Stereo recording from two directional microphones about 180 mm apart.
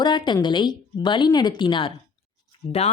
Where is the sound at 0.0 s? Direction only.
25° left (ahead or behind).